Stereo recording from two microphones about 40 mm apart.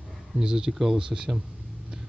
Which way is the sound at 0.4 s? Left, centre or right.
Centre.